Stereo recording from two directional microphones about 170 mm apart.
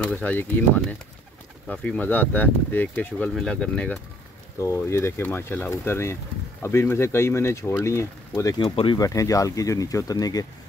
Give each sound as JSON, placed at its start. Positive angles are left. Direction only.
{"t": 0.0, "sound": "speech", "side_deg": 10}
{"t": 1.7, "sound": "speech", "side_deg": 5}
{"t": 8.5, "sound": "speech", "side_deg": 30}
{"t": 8.9, "sound": "speech", "side_deg": 20}